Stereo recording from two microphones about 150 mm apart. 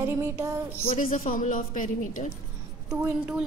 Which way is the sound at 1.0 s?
65° left (ahead or behind).